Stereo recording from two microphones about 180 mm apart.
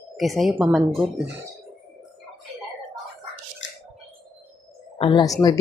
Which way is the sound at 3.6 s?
90° left.